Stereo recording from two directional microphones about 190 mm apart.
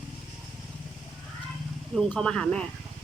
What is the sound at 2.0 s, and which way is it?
Speech, 5° left (ahead or behind).